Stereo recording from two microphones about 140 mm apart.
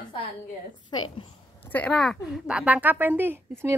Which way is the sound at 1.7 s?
10° left (ahead or behind).